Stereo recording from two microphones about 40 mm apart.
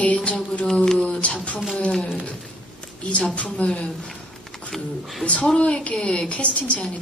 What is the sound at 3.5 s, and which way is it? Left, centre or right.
Speech, left.